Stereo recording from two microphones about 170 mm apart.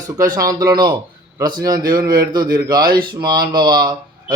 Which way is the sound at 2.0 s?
60° right (ahead or behind).